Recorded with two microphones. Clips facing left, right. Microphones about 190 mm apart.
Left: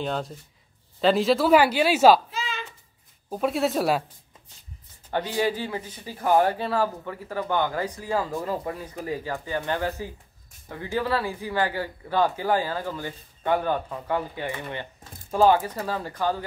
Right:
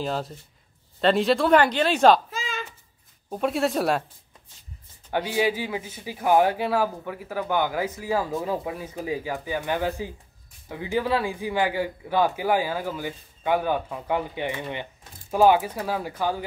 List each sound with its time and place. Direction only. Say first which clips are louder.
0.0 s speech: even; centre (ahead or behind)
2.3 s a sound: even; 45° right (ahead or behind)
3.3 s speech: even; centre (ahead or behind)
5.1 s a man's voice: right 1 dB; 10° right (ahead or behind)